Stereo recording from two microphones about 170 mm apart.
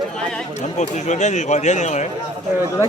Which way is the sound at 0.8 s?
45° left (ahead or behind).